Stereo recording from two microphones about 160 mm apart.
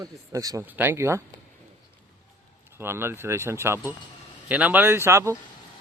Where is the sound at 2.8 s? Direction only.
15° right (ahead or behind).